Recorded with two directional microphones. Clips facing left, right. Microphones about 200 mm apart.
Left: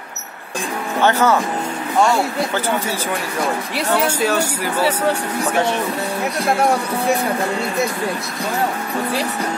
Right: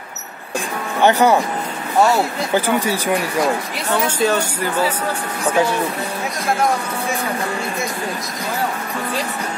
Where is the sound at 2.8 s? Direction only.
15° right (ahead or behind).